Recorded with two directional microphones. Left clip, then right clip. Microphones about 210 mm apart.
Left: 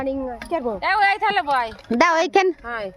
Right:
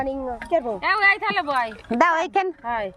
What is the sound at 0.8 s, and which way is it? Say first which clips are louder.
A woman's voice: left 2 dB; 30° left (ahead or behind).